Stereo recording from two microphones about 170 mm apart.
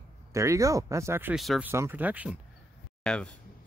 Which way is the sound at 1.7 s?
15° right (ahead or behind).